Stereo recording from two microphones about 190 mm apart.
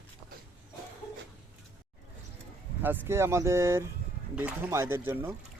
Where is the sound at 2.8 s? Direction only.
10° right (ahead or behind).